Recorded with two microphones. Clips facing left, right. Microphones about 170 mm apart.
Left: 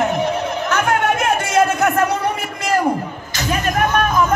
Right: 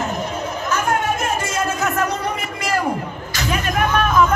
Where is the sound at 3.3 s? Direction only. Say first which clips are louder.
Left 2 dB; 40° left (ahead or behind).